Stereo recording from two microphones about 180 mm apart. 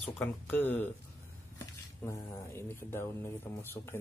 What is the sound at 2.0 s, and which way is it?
Speech, 10° left (ahead or behind).